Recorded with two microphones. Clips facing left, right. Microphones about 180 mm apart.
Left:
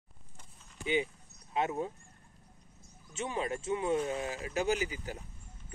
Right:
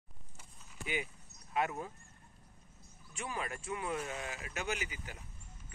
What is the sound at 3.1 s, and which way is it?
Speech, 25° left (ahead or behind).